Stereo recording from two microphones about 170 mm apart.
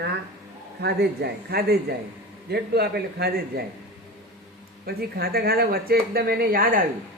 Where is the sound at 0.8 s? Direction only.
75° right (ahead or behind).